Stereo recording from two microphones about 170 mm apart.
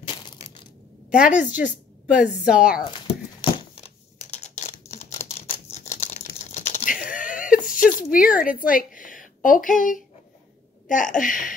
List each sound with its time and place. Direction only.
0.0 s crushing: 25° left (ahead or behind)
1.1 s a woman's voice: 5° right (ahead or behind)
3.5 s a sound: 35° left (ahead or behind)
5.9 s typing: 40° left (ahead or behind)
7.1 s whimper: 50° left (ahead or behind)
8.1 s a woman's voice: 55° left (ahead or behind)